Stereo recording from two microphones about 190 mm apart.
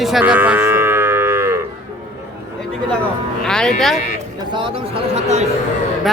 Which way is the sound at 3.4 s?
5° left (ahead or behind).